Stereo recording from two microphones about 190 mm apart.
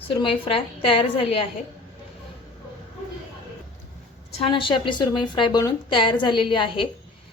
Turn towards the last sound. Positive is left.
turn(degrees=25)  # may be behind; listen again after turning